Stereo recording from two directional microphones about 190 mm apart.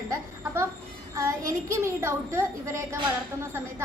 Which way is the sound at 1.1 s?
15° right (ahead or behind).